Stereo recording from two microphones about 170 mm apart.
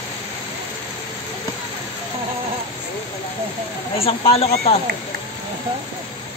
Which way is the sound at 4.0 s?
35° left (ahead or behind).